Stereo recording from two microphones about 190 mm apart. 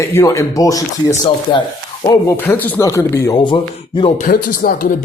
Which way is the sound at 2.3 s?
10° left (ahead or behind).